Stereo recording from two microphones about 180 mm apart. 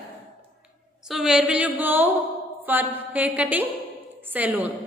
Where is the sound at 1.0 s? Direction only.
5° right (ahead or behind).